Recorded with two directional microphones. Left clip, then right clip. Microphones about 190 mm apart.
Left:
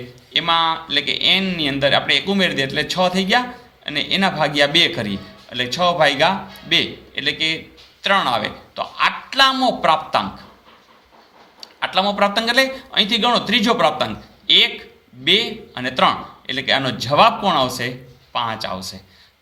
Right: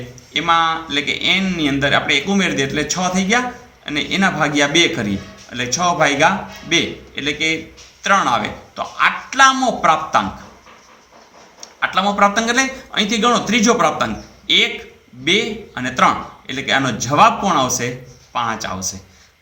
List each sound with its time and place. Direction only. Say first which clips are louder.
0.3 s a man's voice: right 2 dB; 40° left (ahead or behind)
11.8 s a man's voice: right 3 dB; 40° left (ahead or behind)